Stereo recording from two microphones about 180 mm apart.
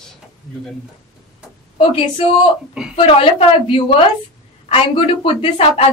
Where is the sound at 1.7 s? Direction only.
30° left (ahead or behind).